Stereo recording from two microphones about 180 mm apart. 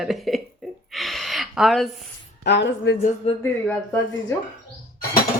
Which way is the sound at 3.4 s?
10° left (ahead or behind).